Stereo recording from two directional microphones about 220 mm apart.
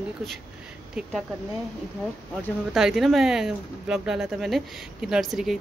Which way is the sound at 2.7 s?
Centre (ahead or behind).